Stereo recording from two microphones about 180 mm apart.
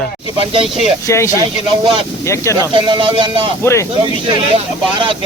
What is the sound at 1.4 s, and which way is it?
Speech, 25° right (ahead or behind).